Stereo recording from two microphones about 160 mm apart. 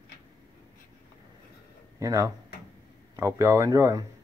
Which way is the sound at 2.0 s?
20° right (ahead or behind).